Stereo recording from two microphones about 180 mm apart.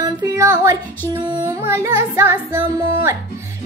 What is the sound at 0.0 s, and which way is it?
Speech, 20° right (ahead or behind).